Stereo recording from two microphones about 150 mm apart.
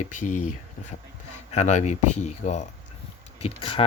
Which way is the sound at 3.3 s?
40° left (ahead or behind).